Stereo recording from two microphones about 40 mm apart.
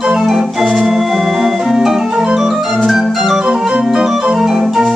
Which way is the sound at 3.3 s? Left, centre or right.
Centre.